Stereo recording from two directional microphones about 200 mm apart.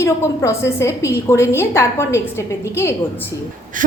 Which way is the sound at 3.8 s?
40° right (ahead or behind).